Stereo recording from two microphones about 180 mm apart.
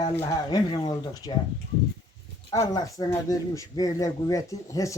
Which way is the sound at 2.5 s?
20° left (ahead or behind).